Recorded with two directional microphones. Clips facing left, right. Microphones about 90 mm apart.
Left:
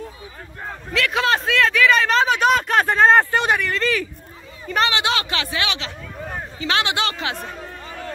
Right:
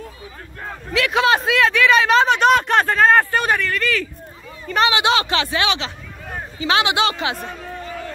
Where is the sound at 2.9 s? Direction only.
20° left (ahead or behind).